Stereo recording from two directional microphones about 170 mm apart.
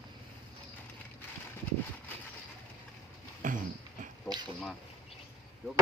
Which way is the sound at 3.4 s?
50° right (ahead or behind).